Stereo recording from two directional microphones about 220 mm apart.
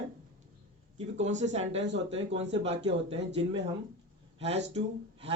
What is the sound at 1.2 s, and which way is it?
Speech, 30° right (ahead or behind).